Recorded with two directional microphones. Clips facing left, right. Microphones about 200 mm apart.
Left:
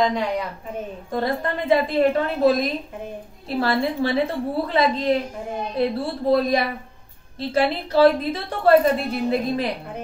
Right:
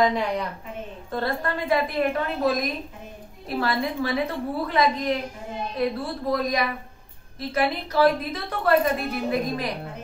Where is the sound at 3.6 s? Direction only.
30° left (ahead or behind).